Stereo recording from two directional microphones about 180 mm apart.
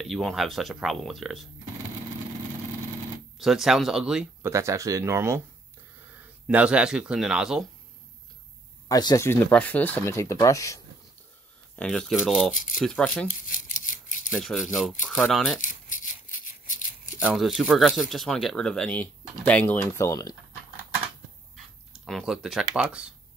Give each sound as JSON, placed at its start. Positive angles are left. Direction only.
{"t": 0.0, "sound": "speech", "side_deg": 0}
{"t": 3.3, "sound": "speech", "side_deg": 0}
{"t": 4.5, "sound": "speech", "side_deg": -15}
{"t": 6.4, "sound": "speech", "side_deg": -5}
{"t": 8.8, "sound": "speech", "side_deg": 20}
{"t": 11.7, "sound": "speech", "side_deg": 5}
{"t": 13.5, "sound": "a sound", "side_deg": 45}
{"t": 14.3, "sound": "speech", "side_deg": 0}
{"t": 15.6, "sound": "a sound", "side_deg": 45}
{"t": 17.2, "sound": "speech", "side_deg": -5}
{"t": 21.9, "sound": "speech", "side_deg": 0}